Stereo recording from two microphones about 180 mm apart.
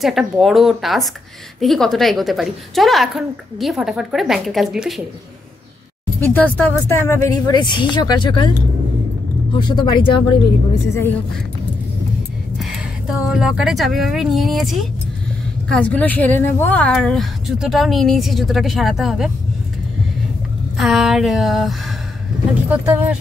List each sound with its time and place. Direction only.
0.0 s a woman's voice: centre (ahead or behind)
6.2 s speech: 10° left (ahead or behind); by 8.5 s 25° left (ahead or behind)
9.6 s speech: 25° left (ahead or behind)
12.5 s a woman's voice: centre (ahead or behind)
20.7 s a woman's voice: centre (ahead or behind)